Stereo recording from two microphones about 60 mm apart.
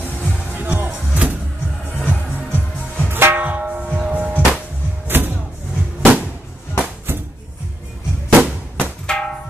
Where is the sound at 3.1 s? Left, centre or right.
Right.